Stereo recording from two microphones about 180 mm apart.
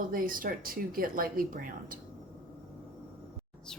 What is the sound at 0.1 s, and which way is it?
Speech, 50° right (ahead or behind).